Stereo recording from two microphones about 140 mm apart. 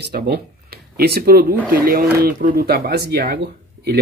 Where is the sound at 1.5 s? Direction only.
15° right (ahead or behind).